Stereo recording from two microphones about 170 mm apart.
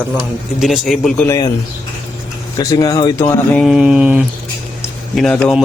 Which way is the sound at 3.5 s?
Centre (ahead or behind).